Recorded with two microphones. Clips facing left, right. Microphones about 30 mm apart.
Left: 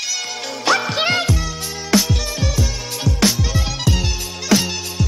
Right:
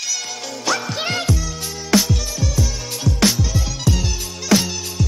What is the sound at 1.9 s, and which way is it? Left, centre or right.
Music, centre.